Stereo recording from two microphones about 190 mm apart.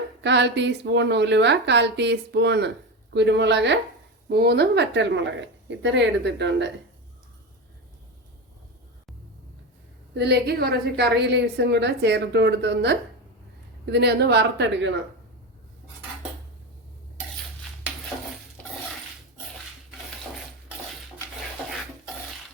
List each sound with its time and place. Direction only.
0.2 s a woman's voice: 65° right (ahead or behind)
10.2 s a woman's voice: 60° right (ahead or behind)